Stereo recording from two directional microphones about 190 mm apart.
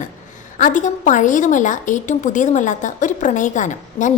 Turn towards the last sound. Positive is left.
turn(degrees=40)  # may be behind; listen again after turning